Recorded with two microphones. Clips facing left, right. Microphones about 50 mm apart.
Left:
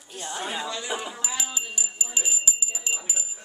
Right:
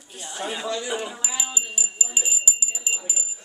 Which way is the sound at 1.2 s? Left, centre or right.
Centre.